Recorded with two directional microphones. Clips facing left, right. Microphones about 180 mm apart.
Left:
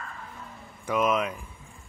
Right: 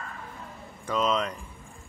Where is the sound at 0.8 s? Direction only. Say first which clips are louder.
Left 1 dB; 10° left (ahead or behind).